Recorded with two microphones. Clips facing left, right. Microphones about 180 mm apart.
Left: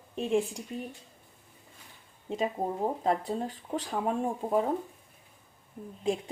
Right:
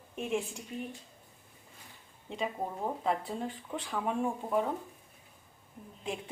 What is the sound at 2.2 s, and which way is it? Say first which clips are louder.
Speech: left 5 dB; 40° left (ahead or behind).